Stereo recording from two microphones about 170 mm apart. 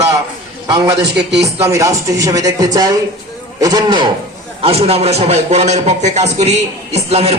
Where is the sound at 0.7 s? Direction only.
25° right (ahead or behind).